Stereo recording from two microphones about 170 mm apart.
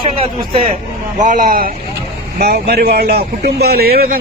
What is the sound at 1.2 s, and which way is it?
Speech, 50° right (ahead or behind).